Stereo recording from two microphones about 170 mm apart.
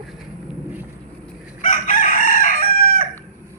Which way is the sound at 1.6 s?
50° left (ahead or behind).